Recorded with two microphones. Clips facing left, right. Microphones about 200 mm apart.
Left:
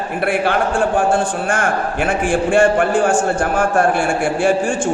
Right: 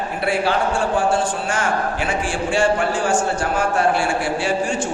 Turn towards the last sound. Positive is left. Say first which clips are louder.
# left 4 dB
turn(degrees=50)  # may be behind; listen again after turning